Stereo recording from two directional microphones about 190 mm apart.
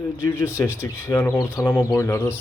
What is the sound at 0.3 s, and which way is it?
Speech, 10° left (ahead or behind).